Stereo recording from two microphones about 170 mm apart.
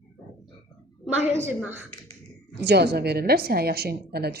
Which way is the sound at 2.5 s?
80° right.